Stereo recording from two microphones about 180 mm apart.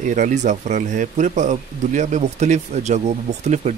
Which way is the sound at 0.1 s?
45° right (ahead or behind).